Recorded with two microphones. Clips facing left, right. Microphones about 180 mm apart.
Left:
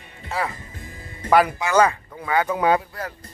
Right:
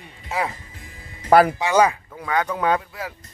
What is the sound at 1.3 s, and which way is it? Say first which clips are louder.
Speech: right 3 dB; 45° right (ahead or behind).